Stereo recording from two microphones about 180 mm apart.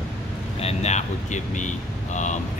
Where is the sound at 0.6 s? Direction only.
35° left (ahead or behind).